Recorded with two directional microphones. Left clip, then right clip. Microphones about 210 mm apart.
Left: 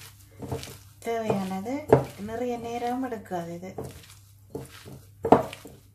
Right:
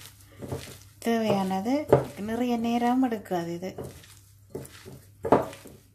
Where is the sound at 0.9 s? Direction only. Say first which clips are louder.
Right 2 dB; 35° right (ahead or behind).